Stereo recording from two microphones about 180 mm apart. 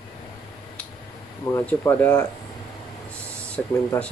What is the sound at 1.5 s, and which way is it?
Speech, 10° left (ahead or behind).